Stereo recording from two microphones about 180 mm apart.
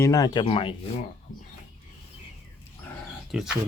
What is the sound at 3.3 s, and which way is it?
Speech, 5° right (ahead or behind).